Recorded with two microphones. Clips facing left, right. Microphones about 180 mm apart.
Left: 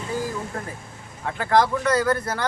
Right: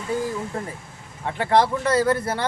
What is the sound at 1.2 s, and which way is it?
A man's voice, 25° right (ahead or behind).